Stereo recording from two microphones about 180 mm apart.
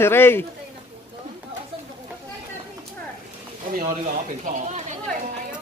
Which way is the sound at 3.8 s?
50° right (ahead or behind).